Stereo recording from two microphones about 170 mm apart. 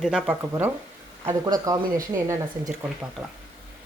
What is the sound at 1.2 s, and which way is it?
Speech, 25° right (ahead or behind).